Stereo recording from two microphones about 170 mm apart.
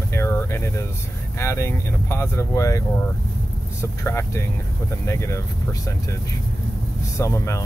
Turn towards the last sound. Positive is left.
turn(degrees=15)  # may be behind; listen again after turning